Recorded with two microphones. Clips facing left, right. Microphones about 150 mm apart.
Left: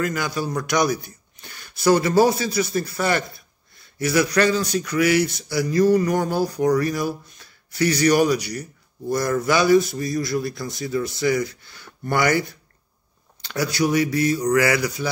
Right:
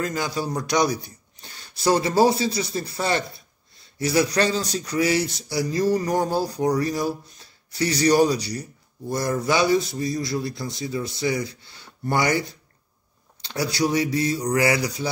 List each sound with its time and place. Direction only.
0.0 s speech: 30° right (ahead or behind)
13.4 s speech: 30° right (ahead or behind)